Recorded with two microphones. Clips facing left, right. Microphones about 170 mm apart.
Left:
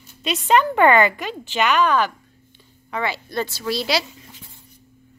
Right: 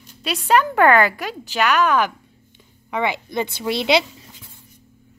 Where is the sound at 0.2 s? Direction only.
5° right (ahead or behind); by 4.0 s 20° right (ahead or behind).